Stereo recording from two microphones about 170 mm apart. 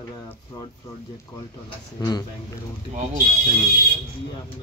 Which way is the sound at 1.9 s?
25° left (ahead or behind).